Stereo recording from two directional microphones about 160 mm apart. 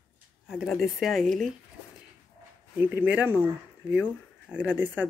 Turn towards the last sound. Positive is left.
turn(degrees=-10)  # may be behind; listen again after turning